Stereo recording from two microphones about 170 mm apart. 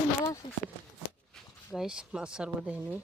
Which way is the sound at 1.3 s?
Centre (ahead or behind).